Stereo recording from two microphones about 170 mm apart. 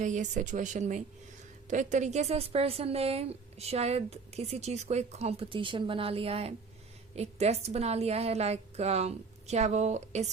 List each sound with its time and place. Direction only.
0.0 s a woman's voice: 45° right (ahead or behind)